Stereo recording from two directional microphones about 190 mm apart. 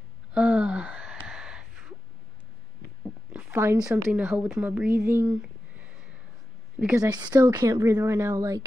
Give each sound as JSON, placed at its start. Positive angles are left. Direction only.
{"t": 0.3, "sound": "a sound", "side_deg": -5}
{"t": 3.3, "sound": "speech", "side_deg": -10}
{"t": 7.0, "sound": "speech", "side_deg": -20}